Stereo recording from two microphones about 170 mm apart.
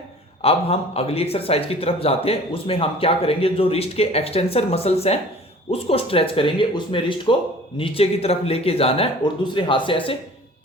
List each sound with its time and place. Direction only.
0.4 s speech: 35° left (ahead or behind)